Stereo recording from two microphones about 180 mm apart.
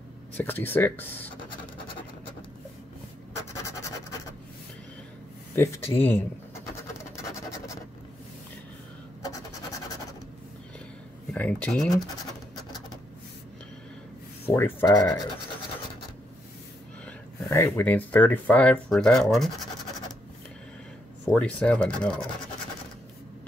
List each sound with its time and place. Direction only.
0.4 s speech: 10° left (ahead or behind)
3.6 s scratch: 15° left (ahead or behind)
5.9 s scratch: 10° left (ahead or behind)
11.3 s speech: 10° left (ahead or behind)
14.5 s speech: 10° left (ahead or behind)
17.0 s speech: 10° left (ahead or behind)
21.3 s speech: 5° left (ahead or behind)